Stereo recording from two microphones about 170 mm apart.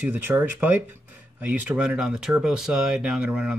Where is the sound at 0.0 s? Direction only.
10° right (ahead or behind).